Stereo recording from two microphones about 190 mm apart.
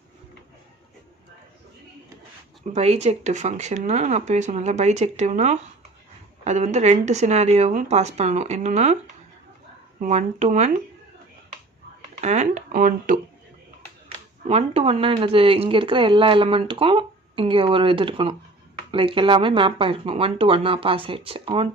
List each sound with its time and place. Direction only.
2.7 s speech: 35° right (ahead or behind)
10.0 s speech: 35° right (ahead or behind)
12.2 s speech: 35° right (ahead or behind)
14.4 s speech: 30° right (ahead or behind)